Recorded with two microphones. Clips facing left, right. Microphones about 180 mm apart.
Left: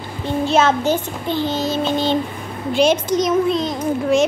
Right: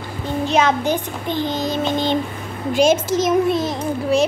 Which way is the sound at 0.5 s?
15° right (ahead or behind).